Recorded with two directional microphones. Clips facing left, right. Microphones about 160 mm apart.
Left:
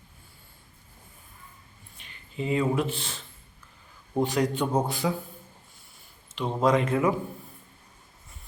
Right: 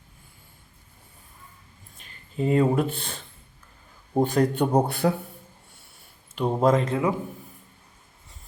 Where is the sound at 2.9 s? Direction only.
55° right (ahead or behind).